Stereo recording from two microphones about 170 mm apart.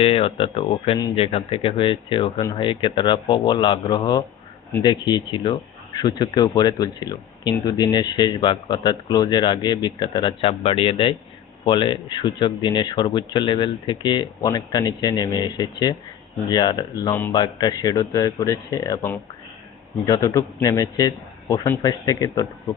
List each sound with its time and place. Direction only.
0.0 s speech: 35° left (ahead or behind)